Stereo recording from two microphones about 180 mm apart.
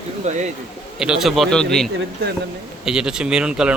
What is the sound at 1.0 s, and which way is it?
Speech, 5° right (ahead or behind).